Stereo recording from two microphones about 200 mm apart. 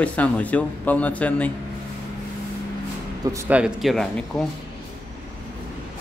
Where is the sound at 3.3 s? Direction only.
10° right (ahead or behind).